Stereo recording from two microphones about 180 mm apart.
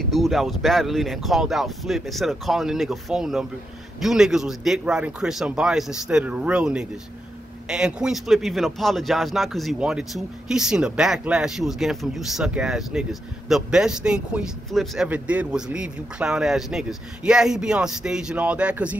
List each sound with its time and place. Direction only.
0.0 s speech: centre (ahead or behind)